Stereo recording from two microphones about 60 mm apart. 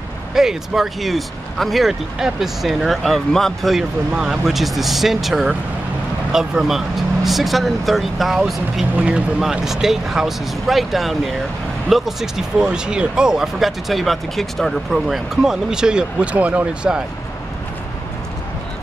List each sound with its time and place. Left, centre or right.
0.3 s speech: centre
4.1 s speech: centre
4.5 s speech: centre
8.9 s speech: right
9.4 s speech: centre